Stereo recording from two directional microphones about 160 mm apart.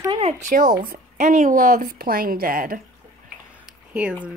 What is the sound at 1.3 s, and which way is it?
A woman's voice, 55° right (ahead or behind).